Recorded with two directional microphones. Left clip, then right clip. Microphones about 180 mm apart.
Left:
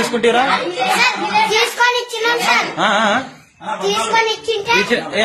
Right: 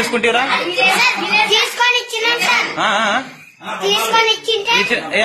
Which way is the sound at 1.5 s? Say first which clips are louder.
Even; 25° left (ahead or behind).